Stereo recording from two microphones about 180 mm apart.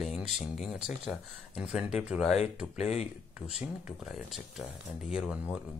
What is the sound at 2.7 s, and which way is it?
Speech, 40° left (ahead or behind).